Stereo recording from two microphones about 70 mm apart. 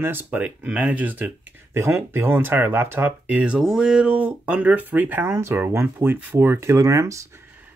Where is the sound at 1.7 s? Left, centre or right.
Right; by 3.6 s centre.